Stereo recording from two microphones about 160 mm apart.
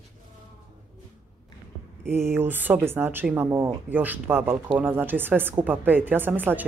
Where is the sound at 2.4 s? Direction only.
10° right (ahead or behind).